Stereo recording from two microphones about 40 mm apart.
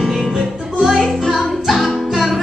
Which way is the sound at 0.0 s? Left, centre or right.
Centre.